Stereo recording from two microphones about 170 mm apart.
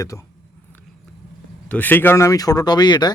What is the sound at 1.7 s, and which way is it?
Speech, 10° left (ahead or behind).